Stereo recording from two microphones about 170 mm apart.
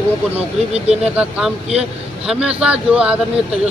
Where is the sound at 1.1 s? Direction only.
5° right (ahead or behind).